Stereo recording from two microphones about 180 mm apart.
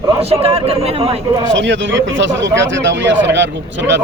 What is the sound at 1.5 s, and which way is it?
Speech, 90° right.